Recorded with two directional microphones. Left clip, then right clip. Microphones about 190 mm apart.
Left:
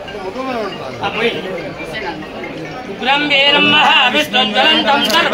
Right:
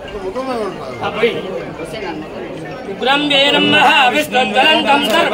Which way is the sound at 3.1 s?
50° right (ahead or behind).